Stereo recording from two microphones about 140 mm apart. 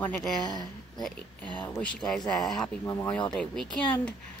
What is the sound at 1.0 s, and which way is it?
Speech, 10° left (ahead or behind).